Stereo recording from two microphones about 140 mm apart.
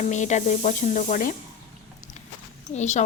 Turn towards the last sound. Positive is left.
turn(degrees=55)  # may be behind; listen again after turning